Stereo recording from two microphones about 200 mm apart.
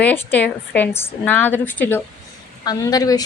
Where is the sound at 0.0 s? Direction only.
10° left (ahead or behind).